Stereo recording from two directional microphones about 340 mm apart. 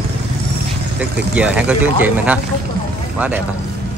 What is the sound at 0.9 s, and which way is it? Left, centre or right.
Speech, centre.